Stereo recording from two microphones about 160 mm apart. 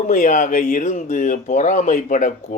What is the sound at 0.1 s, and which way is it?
Speech, 55° left (ahead or behind).